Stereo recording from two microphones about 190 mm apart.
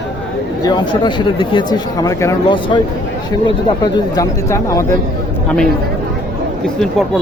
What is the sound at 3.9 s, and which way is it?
Speech, 20° left (ahead or behind).